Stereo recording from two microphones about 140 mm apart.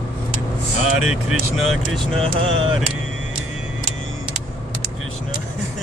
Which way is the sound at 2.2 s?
40° right (ahead or behind).